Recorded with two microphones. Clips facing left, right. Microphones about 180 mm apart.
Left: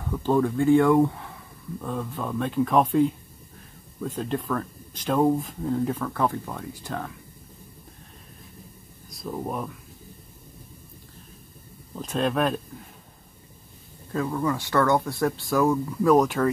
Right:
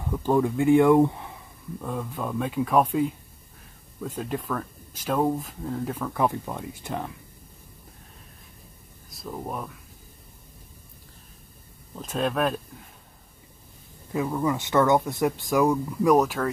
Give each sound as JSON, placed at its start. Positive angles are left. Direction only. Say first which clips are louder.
{"t": 0.1, "sound": "speech", "louder": "even", "side_deg": -15}
{"t": 1.8, "sound": "speech", "louder": "even", "side_deg": -5}
{"t": 6.1, "sound": "speech", "louder": "right 1 dB", "side_deg": -15}
{"t": 9.1, "sound": "speech", "louder": "left 3 dB", "side_deg": 0}
{"t": 11.9, "sound": "speech", "louder": "left 2 dB", "side_deg": 0}
{"t": 14.1, "sound": "speech", "louder": "even", "side_deg": -15}
{"t": 16.3, "sound": "speech", "louder": "left 4 dB", "side_deg": 0}